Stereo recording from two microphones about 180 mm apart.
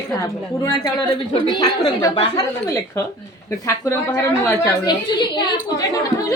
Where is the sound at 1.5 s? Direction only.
20° left (ahead or behind).